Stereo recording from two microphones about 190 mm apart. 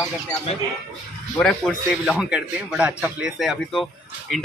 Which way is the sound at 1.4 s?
5° left (ahead or behind).